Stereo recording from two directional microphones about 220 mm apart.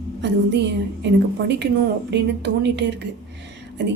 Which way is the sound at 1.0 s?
55° right (ahead or behind).